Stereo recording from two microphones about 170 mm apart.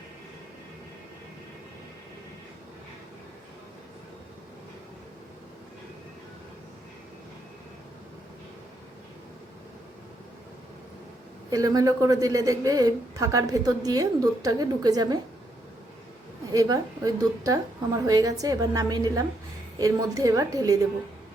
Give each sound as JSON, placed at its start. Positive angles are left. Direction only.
{"t": 11.5, "sound": "a woman's voice", "side_deg": -20}
{"t": 16.5, "sound": "a woman's voice", "side_deg": -20}